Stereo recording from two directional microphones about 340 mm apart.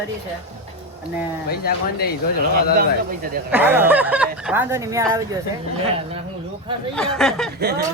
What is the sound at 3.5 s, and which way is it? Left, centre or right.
A man's voice, centre.